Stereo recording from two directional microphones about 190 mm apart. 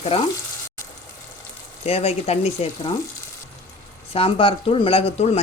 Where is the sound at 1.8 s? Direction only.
35° left (ahead or behind).